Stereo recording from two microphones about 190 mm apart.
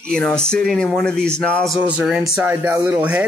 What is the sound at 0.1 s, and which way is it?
A man's voice, 5° left (ahead or behind).